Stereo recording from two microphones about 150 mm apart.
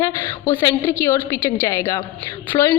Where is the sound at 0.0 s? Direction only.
20° left (ahead or behind).